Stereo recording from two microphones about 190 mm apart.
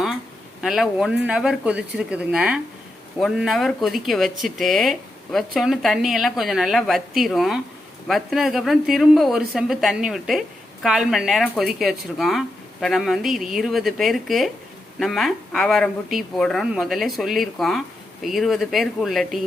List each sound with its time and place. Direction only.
0.6 s speech: centre (ahead or behind)